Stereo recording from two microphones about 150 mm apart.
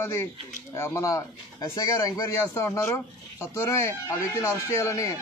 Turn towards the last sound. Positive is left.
turn(degrees=20)  # may be behind; listen again after turning